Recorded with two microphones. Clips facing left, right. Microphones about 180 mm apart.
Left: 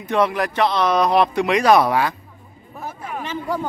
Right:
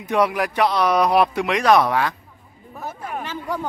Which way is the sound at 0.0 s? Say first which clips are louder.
Even; 10° right (ahead or behind).